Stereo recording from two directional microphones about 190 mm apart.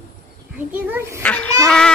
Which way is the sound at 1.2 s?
5° left (ahead or behind).